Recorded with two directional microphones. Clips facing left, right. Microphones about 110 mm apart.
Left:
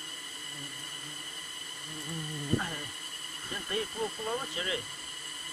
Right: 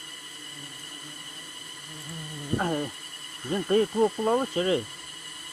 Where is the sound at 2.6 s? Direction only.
40° right (ahead or behind).